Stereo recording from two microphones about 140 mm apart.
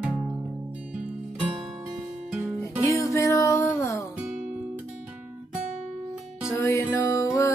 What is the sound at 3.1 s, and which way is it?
Music, 20° left (ahead or behind).